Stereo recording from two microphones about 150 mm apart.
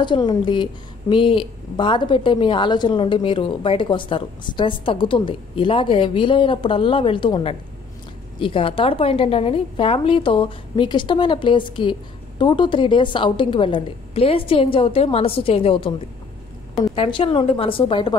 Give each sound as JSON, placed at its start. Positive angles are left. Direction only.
{"t": 0.0, "sound": "a woman's voice", "side_deg": 30}
{"t": 16.9, "sound": "a woman's voice", "side_deg": 35}